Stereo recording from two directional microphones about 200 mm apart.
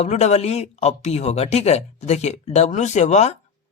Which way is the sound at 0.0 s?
35° left (ahead or behind).